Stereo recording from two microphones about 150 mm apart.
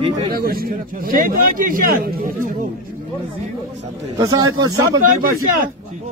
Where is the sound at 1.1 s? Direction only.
70° right (ahead or behind).